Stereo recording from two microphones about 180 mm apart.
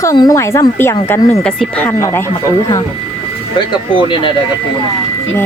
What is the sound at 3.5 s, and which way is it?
Speech, 25° left (ahead or behind).